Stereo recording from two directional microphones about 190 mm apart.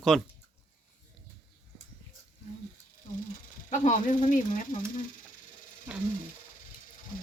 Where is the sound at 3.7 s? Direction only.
40° left (ahead or behind).